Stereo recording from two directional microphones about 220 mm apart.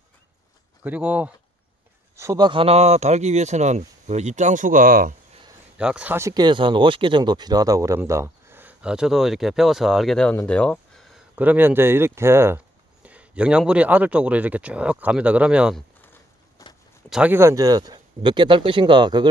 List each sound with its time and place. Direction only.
0.8 s speech: 5° right (ahead or behind); by 5.1 s 40° right (ahead or behind)
5.8 s speech: 5° right (ahead or behind)
16.0 s a sound: 10° left (ahead or behind)
17.1 s speech: 5° right (ahead or behind)